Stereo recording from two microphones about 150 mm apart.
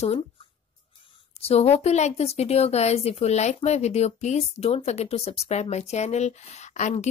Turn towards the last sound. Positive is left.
turn(degrees=50)  # may be behind; listen again after turning